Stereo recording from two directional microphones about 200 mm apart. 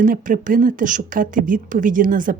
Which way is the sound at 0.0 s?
40° right (ahead or behind).